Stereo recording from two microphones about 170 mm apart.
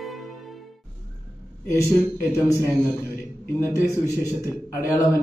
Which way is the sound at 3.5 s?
15° left (ahead or behind).